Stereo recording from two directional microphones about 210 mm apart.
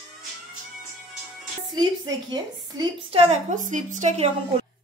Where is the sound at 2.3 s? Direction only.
25° right (ahead or behind).